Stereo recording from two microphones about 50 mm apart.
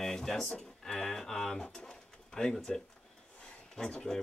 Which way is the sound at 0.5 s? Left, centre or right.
Centre.